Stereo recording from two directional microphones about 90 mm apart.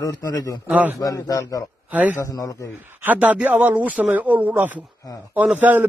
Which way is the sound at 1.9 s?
20° right (ahead or behind).